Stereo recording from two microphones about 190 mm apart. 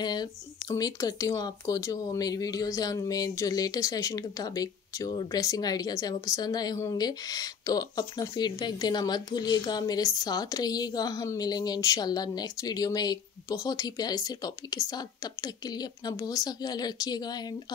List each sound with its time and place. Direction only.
0.0 s speech: 20° left (ahead or behind)